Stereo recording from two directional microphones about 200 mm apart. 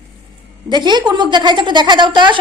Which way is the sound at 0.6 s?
20° right (ahead or behind).